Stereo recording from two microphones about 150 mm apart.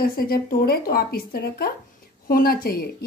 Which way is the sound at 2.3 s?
80° left.